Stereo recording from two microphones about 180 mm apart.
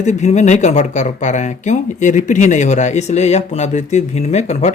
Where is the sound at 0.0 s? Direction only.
40° left (ahead or behind).